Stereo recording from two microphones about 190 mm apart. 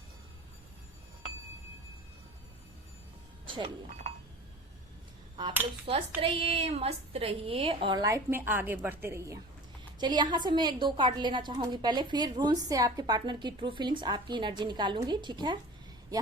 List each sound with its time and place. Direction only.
3.4 s chink: 25° right (ahead or behind)
5.9 s a woman's voice: 30° right (ahead or behind)